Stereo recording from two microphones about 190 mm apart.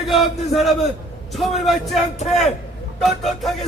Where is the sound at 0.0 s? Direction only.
Centre (ahead or behind).